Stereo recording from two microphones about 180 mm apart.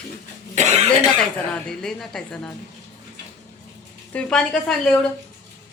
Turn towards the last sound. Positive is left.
turn(degrees=5)  # may be behind; listen again after turning